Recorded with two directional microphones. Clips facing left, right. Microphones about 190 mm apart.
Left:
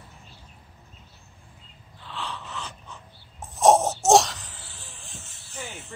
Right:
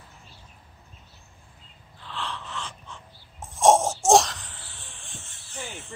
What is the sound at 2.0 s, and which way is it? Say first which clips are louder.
Wheeze: even; centre (ahead or behind).